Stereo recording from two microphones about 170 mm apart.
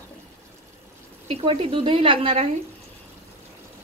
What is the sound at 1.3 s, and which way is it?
Speech, 35° right (ahead or behind).